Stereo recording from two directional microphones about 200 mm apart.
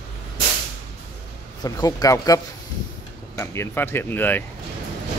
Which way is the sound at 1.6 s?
20° left (ahead or behind).